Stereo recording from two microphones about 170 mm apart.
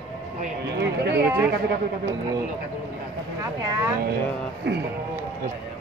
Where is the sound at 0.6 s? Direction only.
80° right.